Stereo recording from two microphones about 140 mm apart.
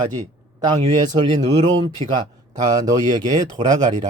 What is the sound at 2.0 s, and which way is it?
Speech, 45° right (ahead or behind).